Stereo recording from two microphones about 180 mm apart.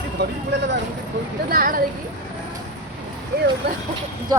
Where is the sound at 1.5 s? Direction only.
55° right (ahead or behind).